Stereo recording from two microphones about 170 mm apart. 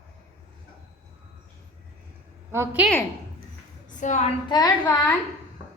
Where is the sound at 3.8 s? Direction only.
45° left (ahead or behind).